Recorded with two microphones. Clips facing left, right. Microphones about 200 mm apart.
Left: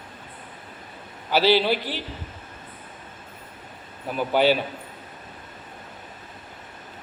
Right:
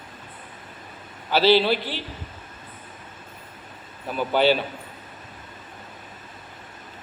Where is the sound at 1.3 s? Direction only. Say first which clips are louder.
Right 1 dB; 15° left (ahead or behind).